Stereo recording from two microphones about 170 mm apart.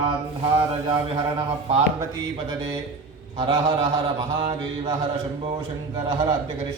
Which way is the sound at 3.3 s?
30° right (ahead or behind).